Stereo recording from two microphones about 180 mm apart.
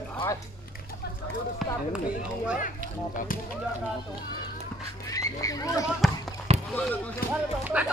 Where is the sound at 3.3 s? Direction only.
50° left (ahead or behind).